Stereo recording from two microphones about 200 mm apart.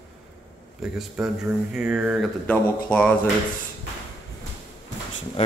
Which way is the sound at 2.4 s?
5° left (ahead or behind).